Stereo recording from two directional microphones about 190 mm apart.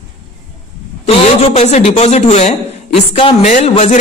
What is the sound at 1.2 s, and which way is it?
A man's voice, 35° left (ahead or behind).